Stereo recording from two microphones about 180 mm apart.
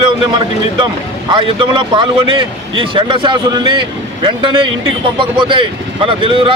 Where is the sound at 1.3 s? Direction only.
25° right (ahead or behind).